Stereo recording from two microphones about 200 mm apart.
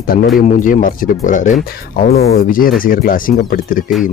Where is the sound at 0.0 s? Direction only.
45° left (ahead or behind).